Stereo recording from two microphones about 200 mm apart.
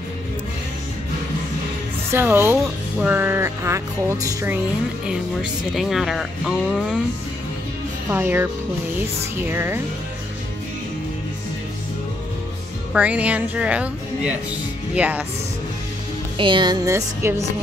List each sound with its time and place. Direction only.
2.1 s speech: 10° right (ahead or behind)
8.1 s speech: 10° right (ahead or behind)
12.9 s speech: 5° right (ahead or behind)
16.3 s speech: 25° right (ahead or behind)